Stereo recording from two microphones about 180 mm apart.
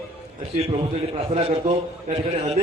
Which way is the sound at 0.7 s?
35° right (ahead or behind).